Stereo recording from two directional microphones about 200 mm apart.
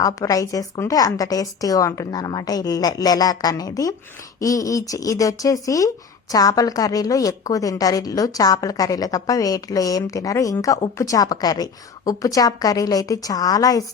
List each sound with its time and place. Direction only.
0.0 s a woman's voice: 15° left (ahead or behind)